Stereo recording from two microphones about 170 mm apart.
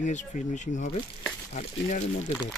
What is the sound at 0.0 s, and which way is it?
Speech, 45° left (ahead or behind).